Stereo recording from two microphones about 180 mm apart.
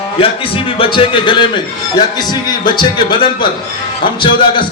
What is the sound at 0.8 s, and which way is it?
A man's voice, 30° left (ahead or behind).